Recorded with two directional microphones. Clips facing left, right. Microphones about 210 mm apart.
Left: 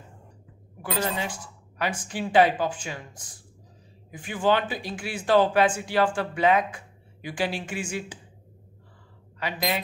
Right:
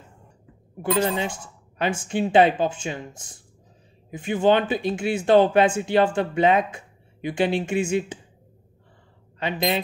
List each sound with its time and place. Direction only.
0.8 s speech: 25° right (ahead or behind)
9.4 s speech: 25° right (ahead or behind)